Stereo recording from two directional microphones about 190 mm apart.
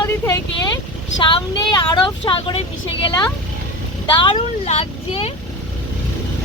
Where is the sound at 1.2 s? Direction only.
25° left (ahead or behind).